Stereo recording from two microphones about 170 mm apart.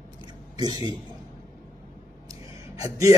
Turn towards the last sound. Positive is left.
turn(degrees=-15)  # may be behind; listen again after turning